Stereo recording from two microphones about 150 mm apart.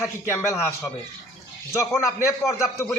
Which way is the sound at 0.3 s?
15° left (ahead or behind).